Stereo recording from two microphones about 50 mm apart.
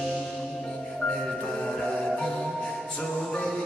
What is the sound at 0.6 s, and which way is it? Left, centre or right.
Music, centre.